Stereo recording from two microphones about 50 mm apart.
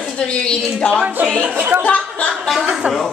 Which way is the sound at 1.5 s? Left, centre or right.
Right.